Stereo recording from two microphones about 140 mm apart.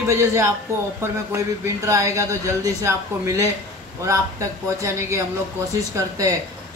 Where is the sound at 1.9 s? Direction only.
20° right (ahead or behind).